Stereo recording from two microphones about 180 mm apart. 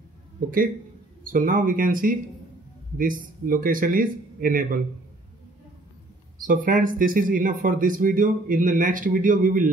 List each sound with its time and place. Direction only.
0.4 s speech: 50° right (ahead or behind)
6.4 s speech: 50° right (ahead or behind)